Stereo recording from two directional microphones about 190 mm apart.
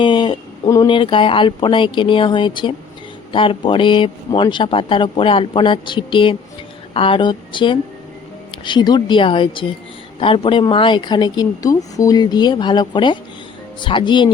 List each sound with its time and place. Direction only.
0.0 s speech: 25° left (ahead or behind)